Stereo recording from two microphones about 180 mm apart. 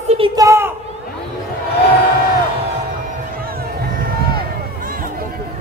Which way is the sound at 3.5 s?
55° right (ahead or behind).